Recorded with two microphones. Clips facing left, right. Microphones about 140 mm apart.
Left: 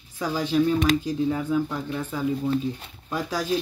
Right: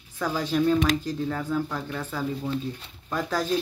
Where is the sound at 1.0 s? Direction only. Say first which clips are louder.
Left 4 dB; 15° left (ahead or behind).